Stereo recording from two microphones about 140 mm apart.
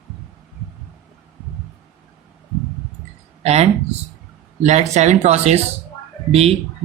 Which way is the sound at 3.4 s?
50° right (ahead or behind).